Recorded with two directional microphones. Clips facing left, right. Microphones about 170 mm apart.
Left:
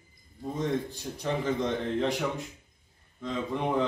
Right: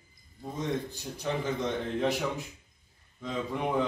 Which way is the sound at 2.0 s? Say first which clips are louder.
Left 1 dB; 5° right (ahead or behind).